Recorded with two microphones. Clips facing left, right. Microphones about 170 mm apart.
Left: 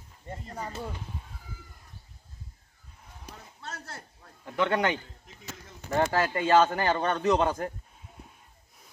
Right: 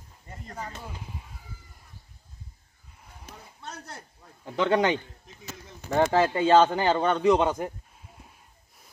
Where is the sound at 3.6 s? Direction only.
20° right (ahead or behind).